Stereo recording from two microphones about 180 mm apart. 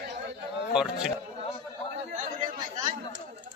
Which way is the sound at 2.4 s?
25° right (ahead or behind).